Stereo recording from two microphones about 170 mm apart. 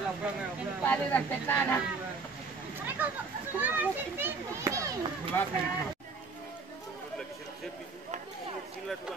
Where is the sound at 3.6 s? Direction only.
10° right (ahead or behind).